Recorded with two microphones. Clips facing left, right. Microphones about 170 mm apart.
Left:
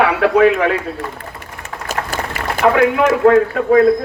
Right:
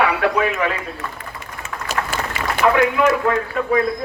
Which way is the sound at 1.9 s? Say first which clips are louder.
Left 2 dB; 45° left (ahead or behind).